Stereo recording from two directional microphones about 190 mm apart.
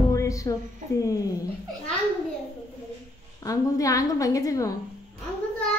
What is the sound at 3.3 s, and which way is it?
A woman's voice, 15° left (ahead or behind).